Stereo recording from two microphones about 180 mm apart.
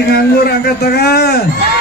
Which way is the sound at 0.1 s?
60° left (ahead or behind).